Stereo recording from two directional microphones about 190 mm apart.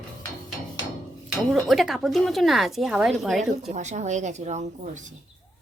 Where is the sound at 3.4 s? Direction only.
40° right (ahead or behind).